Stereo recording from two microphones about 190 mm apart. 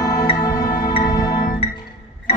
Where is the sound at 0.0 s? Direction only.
20° left (ahead or behind).